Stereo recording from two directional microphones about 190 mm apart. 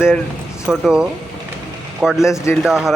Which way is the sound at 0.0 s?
10° left (ahead or behind).